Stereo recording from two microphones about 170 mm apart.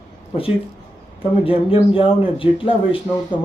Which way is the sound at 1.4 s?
30° left (ahead or behind).